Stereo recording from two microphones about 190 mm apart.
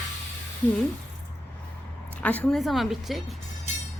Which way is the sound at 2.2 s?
10° left (ahead or behind).